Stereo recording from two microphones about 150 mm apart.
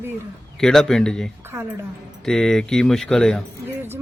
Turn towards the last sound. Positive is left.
turn(degrees=5)  # may be behind; listen again after turning